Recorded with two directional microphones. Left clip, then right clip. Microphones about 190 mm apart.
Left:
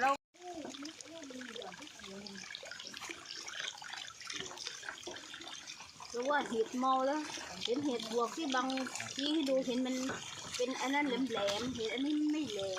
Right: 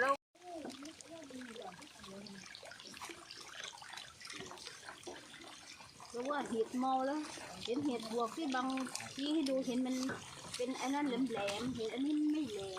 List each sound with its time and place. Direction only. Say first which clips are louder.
4.3 s water: left 7 dB; 20° left (ahead or behind)
6.1 s speech: left 4 dB; 20° left (ahead or behind)